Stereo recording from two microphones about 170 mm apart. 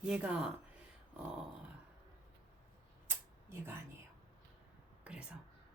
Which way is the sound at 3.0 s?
15° right (ahead or behind).